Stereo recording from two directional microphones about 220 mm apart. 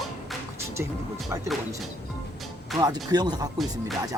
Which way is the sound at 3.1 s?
15° right (ahead or behind).